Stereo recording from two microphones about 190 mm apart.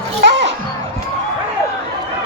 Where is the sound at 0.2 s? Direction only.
65° right (ahead or behind).